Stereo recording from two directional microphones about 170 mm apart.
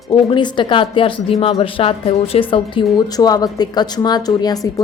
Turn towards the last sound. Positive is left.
turn(degrees=20)  # may be behind; listen again after turning